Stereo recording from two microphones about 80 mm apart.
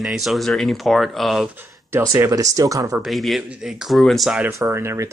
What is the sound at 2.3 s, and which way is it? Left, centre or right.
Speech, right.